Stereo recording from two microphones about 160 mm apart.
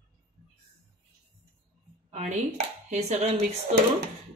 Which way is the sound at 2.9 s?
45° right (ahead or behind).